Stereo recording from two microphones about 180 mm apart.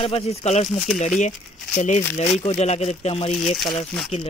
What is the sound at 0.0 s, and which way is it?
Speech, 35° left (ahead or behind).